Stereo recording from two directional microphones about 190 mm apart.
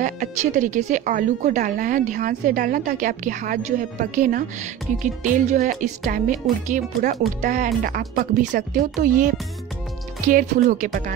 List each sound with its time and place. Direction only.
0.0 s a woman's voice: 40° right (ahead or behind)